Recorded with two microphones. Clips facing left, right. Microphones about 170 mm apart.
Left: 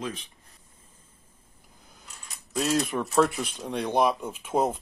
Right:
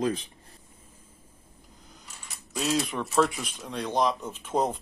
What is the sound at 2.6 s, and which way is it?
Speech, centre (ahead or behind).